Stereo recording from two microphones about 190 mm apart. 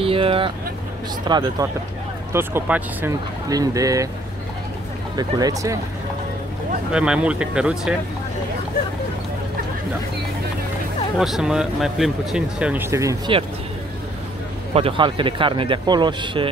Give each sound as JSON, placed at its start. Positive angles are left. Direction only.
{"t": 0.0, "sound": "speech", "side_deg": -30}
{"t": 2.3, "sound": "speech", "side_deg": -10}
{"t": 5.1, "sound": "speech", "side_deg": -20}
{"t": 6.9, "sound": "speech", "side_deg": -5}
{"t": 11.1, "sound": "speech", "side_deg": 0}
{"t": 14.7, "sound": "speech", "side_deg": -30}